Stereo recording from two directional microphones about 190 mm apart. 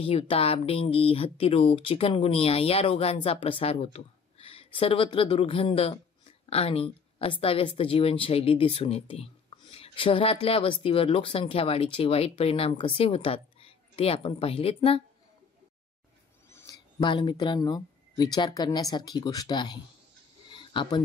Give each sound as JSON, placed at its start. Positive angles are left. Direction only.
{"t": 0.0, "sound": "speech", "side_deg": 30}
{"t": 16.4, "sound": "speech", "side_deg": 15}
{"t": 20.5, "sound": "a sound", "side_deg": 25}